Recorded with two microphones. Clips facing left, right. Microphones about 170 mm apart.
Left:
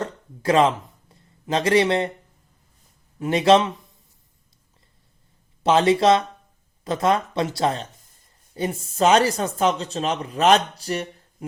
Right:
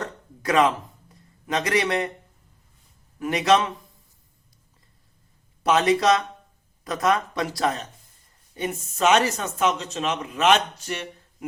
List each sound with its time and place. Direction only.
0.0 s a sound: 30° left (ahead or behind)
3.2 s speech: 30° left (ahead or behind)
5.6 s speech: 30° left (ahead or behind)